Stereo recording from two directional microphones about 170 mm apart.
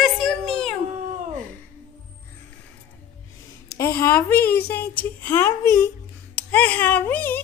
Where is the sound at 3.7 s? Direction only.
15° left (ahead or behind).